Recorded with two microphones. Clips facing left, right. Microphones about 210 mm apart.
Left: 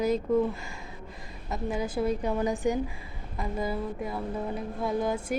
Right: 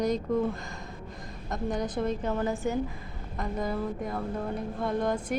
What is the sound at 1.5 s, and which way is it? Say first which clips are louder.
A woman's voice: even; 5° left (ahead or behind).